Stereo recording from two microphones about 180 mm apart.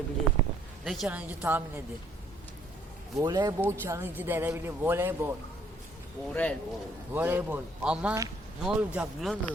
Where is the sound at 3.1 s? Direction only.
20° right (ahead or behind).